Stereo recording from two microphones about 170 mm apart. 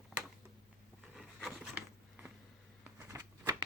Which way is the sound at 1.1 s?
Centre (ahead or behind).